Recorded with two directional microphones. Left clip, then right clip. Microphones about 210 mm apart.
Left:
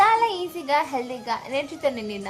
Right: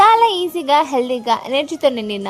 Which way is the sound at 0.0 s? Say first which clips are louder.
Right 8 dB; 40° right (ahead or behind).